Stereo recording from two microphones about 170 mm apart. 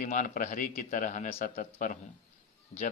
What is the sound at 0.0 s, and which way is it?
A man's voice, 50° left (ahead or behind).